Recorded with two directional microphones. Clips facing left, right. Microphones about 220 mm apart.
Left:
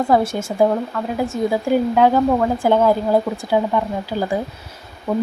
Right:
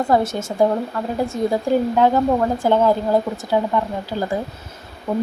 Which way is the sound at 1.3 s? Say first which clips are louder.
Left 1 dB; 5° left (ahead or behind).